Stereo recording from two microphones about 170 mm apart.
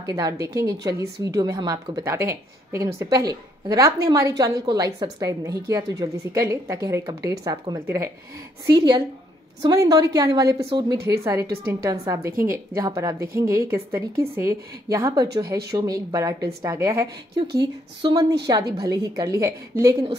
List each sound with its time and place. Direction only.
0.0 s a woman's voice: 20° right (ahead or behind)
0.4 s a woman's voice: 70° right (ahead or behind)
0.7 s a woman's voice: 20° right (ahead or behind)
12.3 s a woman's voice: 55° right (ahead or behind)
12.7 s a woman's voice: 20° right (ahead or behind)